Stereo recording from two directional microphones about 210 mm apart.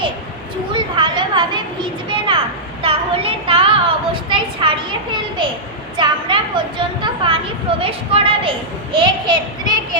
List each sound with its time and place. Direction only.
0.7 s children playing: 25° right (ahead or behind)
2.8 s a sound: 25° right (ahead or behind)
7.8 s a child's voice: 25° right (ahead or behind)